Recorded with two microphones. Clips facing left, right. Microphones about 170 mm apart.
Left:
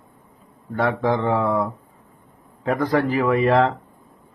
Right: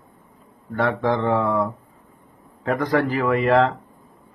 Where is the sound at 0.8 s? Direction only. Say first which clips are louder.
Even; 10° left (ahead or behind).